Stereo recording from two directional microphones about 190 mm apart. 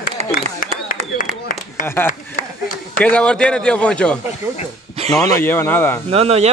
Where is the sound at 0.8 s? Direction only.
45° left (ahead or behind).